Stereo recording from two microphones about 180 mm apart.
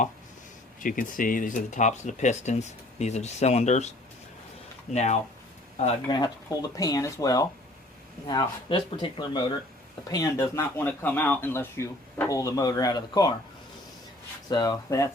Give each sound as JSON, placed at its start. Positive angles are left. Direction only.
{"t": 0.8, "sound": "speech", "side_deg": 50}
{"t": 4.9, "sound": "speech", "side_deg": 40}
{"t": 6.1, "sound": "speech", "side_deg": 25}
{"t": 14.5, "sound": "speech", "side_deg": 20}